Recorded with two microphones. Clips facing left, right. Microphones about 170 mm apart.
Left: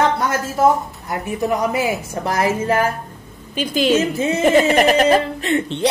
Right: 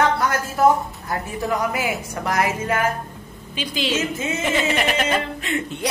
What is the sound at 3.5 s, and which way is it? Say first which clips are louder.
A woman's voice: left 8 dB; 45° left (ahead or behind).